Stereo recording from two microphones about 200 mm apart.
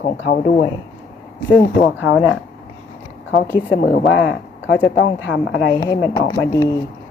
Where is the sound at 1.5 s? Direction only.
5° left (ahead or behind).